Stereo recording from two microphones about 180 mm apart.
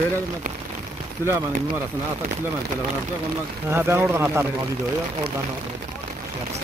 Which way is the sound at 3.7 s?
15° right (ahead or behind).